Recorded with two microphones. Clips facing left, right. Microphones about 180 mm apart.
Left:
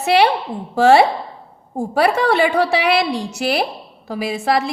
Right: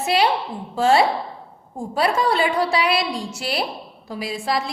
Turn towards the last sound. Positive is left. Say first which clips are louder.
# left 5 dB
turn(degrees=70)  # may be behind; listen again after turning